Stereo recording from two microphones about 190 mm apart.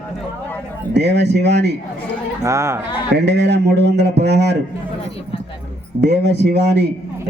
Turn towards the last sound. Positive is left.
turn(degrees=-60)  # may be behind; listen again after turning